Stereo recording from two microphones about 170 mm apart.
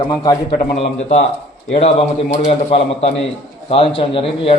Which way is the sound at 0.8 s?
40° left (ahead or behind).